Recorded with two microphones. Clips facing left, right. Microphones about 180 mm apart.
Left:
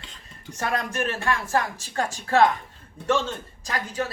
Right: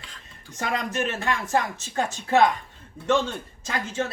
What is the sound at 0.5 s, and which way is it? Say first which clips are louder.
Speech: even; 20° right (ahead or behind).